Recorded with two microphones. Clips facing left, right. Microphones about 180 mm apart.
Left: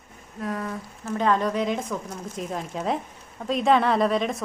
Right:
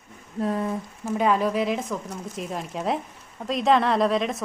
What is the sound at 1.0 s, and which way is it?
A woman's voice, 10° right (ahead or behind).